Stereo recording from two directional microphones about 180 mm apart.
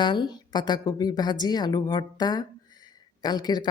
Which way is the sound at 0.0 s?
25° left (ahead or behind).